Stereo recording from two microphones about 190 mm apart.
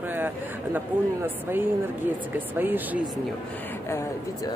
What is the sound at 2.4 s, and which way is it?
Speech, 10° right (ahead or behind).